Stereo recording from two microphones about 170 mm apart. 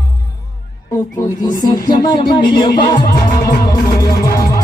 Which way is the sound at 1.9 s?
25° left (ahead or behind).